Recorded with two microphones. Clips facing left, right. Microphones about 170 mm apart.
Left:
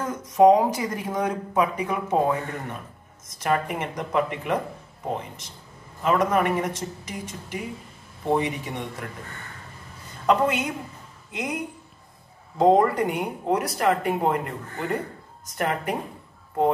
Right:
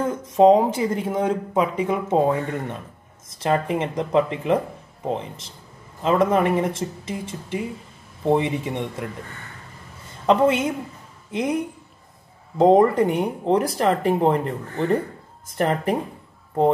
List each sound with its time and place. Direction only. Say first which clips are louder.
0.0 s speech: right 2 dB; 25° right (ahead or behind)
6.0 s speech: right 3 dB; 25° right (ahead or behind)
10.2 s speech: right 4 dB; 25° right (ahead or behind)